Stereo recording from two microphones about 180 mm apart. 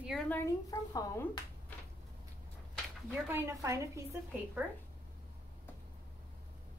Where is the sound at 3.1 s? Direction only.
15° right (ahead or behind).